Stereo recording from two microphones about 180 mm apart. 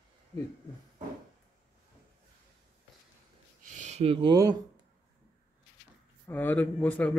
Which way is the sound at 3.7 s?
40° right (ahead or behind).